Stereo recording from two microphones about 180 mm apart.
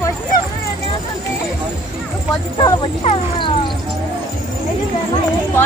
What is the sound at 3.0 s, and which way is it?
Speech, 30° left (ahead or behind).